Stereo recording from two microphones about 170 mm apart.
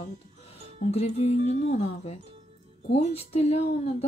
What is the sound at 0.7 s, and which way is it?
Speech, 40° left (ahead or behind).